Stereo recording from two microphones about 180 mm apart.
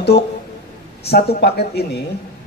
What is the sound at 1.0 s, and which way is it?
Speech, 65° left (ahead or behind).